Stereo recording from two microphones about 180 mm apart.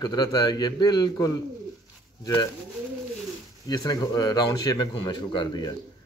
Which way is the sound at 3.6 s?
20° left (ahead or behind).